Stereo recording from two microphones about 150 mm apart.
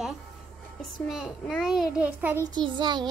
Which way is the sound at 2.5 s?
30° right (ahead or behind).